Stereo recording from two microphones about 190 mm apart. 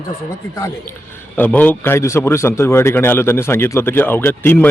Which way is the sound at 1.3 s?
10° left (ahead or behind).